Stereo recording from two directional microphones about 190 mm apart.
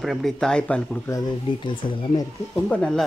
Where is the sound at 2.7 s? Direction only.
5° left (ahead or behind).